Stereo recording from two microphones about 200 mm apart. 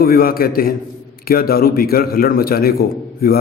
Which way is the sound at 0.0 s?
45° left (ahead or behind).